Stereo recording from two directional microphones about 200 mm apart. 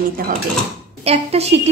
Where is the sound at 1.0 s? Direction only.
30° right (ahead or behind).